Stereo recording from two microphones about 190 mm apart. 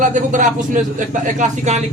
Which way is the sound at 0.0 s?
40° right (ahead or behind).